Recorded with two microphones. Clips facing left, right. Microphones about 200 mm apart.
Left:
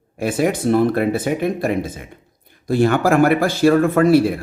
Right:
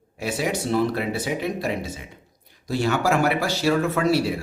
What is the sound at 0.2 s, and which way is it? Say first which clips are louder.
Speech: left 7 dB; 50° left (ahead or behind).